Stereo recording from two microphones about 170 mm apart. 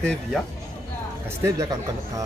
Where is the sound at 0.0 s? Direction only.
5° left (ahead or behind).